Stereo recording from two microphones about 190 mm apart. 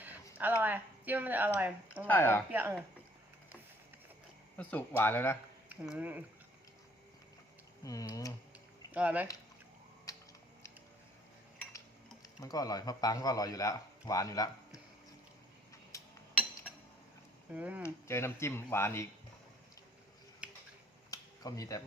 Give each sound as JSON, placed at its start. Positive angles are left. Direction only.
{"t": 0.3, "sound": "speech", "side_deg": -10}
{"t": 2.0, "sound": "speech", "side_deg": 10}
{"t": 2.5, "sound": "speech", "side_deg": -10}
{"t": 4.5, "sound": "speech", "side_deg": 10}
{"t": 5.9, "sound": "speech", "side_deg": -10}
{"t": 7.9, "sound": "speech", "side_deg": 20}
{"t": 8.9, "sound": "speech", "side_deg": -10}
{"t": 12.4, "sound": "a man's voice", "side_deg": 20}
{"t": 17.5, "sound": "speech", "side_deg": -5}
{"t": 17.8, "sound": "speech", "side_deg": 15}
{"t": 21.1, "sound": "a sound", "side_deg": 20}